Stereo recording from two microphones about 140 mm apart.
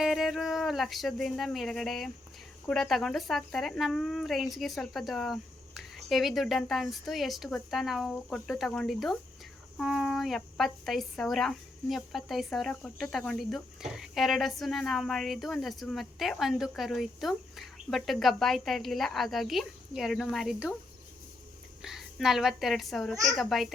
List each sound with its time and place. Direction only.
0.0 s speech: centre (ahead or behind)
21.8 s a woman's voice: 5° right (ahead or behind)
23.1 s a woman's voice: 25° right (ahead or behind)
23.4 s speech: centre (ahead or behind)